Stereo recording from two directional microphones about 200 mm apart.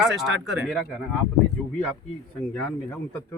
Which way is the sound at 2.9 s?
10° left (ahead or behind).